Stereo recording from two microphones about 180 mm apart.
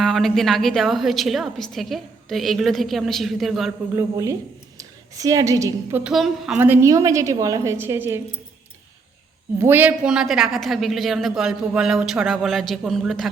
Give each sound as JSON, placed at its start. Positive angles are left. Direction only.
{"t": 0.0, "sound": "a woman's voice", "side_deg": 0}
{"t": 3.9, "sound": "a woman's voice", "side_deg": -20}
{"t": 6.0, "sound": "a woman's voice", "side_deg": 0}
{"t": 9.6, "sound": "a woman's voice", "side_deg": -10}